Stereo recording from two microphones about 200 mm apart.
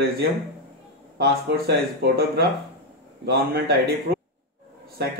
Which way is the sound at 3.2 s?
50° right (ahead or behind).